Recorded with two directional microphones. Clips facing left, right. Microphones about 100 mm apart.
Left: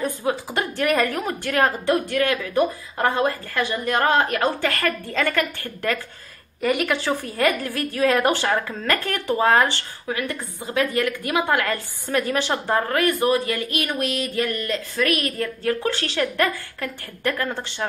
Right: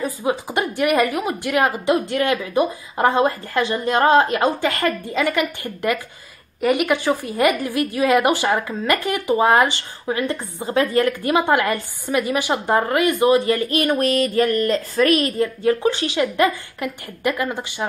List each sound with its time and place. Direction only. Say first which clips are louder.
0.2 s a woman's voice: right 3 dB; 15° right (ahead or behind)
13.5 s speech: right 7 dB; 35° right (ahead or behind); by 17.8 s 10° right (ahead or behind)